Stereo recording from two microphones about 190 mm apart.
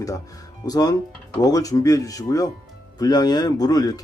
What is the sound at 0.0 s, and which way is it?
Speech, 20° left (ahead or behind).